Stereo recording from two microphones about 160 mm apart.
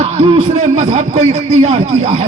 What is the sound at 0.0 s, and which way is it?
A man's voice, 40° right (ahead or behind).